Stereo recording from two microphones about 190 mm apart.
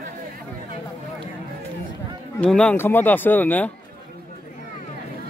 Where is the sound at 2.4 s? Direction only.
5° left (ahead or behind).